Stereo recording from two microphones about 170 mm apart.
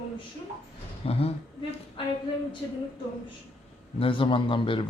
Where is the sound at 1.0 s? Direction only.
35° left (ahead or behind).